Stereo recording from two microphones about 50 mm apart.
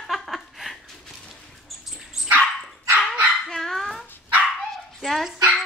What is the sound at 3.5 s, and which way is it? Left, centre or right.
Dog, centre.